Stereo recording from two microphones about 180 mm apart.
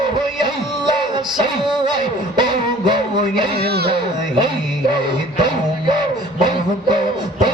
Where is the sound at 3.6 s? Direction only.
60° right (ahead or behind).